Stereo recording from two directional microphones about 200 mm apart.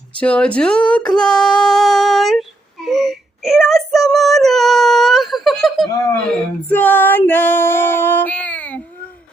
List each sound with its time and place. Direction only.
0.2 s speech: 5° left (ahead or behind)
2.8 s child singing: centre (ahead or behind)
6.2 s female singing: 5° left (ahead or behind)